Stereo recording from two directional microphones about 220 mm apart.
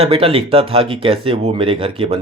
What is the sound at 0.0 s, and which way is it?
Speech, 25° right (ahead or behind).